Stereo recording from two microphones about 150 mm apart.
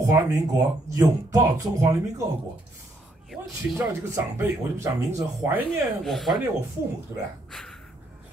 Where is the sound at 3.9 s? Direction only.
15° right (ahead or behind).